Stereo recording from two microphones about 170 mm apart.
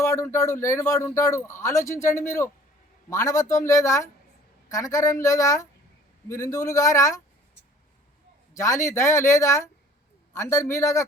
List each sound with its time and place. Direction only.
0.0 s a man's voice: 15° left (ahead or behind)
8.5 s a man's voice: 20° left (ahead or behind)